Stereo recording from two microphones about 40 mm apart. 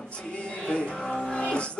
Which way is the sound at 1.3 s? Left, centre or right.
Left.